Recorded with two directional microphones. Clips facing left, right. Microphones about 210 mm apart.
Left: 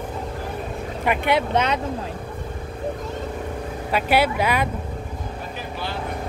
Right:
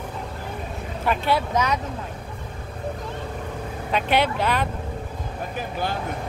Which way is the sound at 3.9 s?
5° left (ahead or behind).